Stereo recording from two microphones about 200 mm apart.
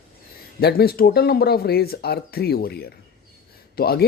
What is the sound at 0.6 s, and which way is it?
Speech, 50° left (ahead or behind).